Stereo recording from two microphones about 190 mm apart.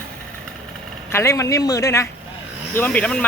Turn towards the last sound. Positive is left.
turn(degrees=5)  # may be behind; listen again after turning